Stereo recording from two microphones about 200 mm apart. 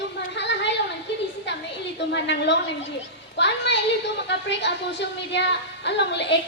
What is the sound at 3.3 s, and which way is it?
A woman's voice, 60° left (ahead or behind).